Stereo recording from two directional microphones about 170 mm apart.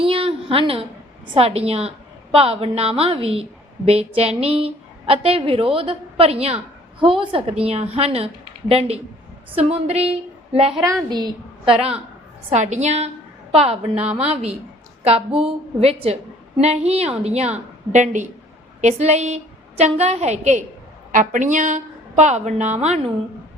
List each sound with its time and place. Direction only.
0.0 s a sound: 30° right (ahead or behind)
1.3 s a woman's voice: 35° right (ahead or behind)
14.0 s a woman's voice: 10° right (ahead or behind)
15.4 s a woman's voice: 35° right (ahead or behind)